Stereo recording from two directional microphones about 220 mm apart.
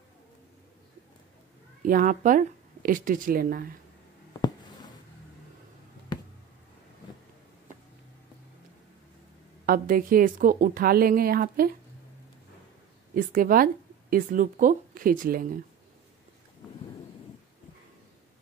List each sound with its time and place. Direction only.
1.8 s speech: 35° right (ahead or behind)
4.4 s a sound: 20° left (ahead or behind)
9.7 s a woman's voice: 40° right (ahead or behind)
13.1 s a woman's voice: 40° right (ahead or behind)